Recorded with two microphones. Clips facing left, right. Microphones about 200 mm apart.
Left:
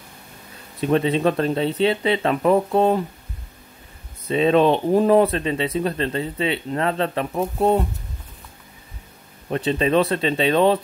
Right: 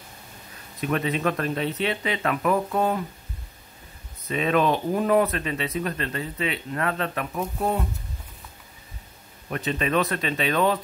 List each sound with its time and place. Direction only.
0.7 s speech: 30° left (ahead or behind)
4.3 s speech: 30° left (ahead or behind)
9.5 s speech: 30° left (ahead or behind)